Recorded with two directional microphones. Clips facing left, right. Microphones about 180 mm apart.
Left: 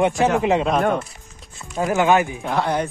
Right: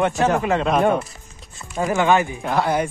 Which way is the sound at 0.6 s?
Centre (ahead or behind).